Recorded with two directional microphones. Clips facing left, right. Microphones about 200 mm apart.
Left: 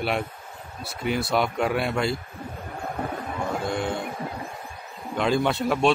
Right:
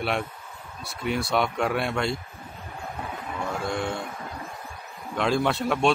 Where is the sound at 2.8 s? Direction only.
50° left (ahead or behind).